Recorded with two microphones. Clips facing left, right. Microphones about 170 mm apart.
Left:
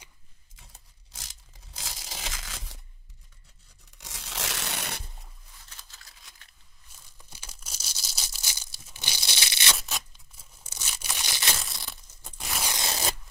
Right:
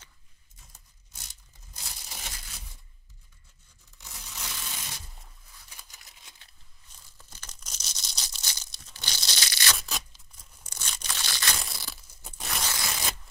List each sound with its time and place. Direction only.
1.1 s crushing: 90° left
4.0 s crushing: 85° left; by 5.0 s 65° left (ahead or behind)
5.7 s a sound: 15° right (ahead or behind)
7.2 s tearing: 10° left (ahead or behind)
9.8 s tearing: centre (ahead or behind); by 11.5 s 15° left (ahead or behind)
11.6 s a sound: centre (ahead or behind)
12.6 s zipper: 20° left (ahead or behind)